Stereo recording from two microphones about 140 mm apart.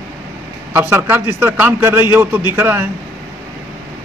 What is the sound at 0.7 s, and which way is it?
A man's voice, 20° right (ahead or behind).